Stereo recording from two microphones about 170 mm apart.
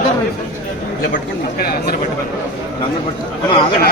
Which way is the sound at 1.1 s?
60° left (ahead or behind).